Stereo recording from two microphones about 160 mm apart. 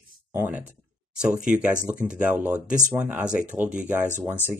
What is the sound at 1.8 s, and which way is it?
Speech, 5° right (ahead or behind).